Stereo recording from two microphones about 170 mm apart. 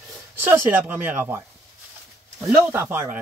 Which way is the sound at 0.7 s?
10° right (ahead or behind).